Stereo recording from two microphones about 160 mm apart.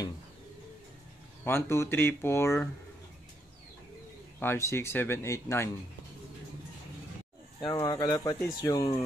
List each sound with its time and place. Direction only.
1.4 s speech: 15° left (ahead or behind)
4.4 s speech: 15° left (ahead or behind)
7.6 s speech: 25° left (ahead or behind)